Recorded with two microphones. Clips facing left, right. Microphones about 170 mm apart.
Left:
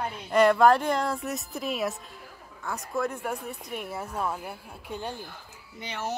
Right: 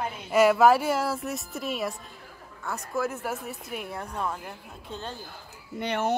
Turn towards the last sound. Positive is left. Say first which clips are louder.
# right 7 dB
turn(degrees=-60)  # may be behind; listen again after turning